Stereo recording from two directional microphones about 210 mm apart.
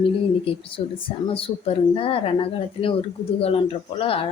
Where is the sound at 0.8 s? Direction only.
25° left (ahead or behind).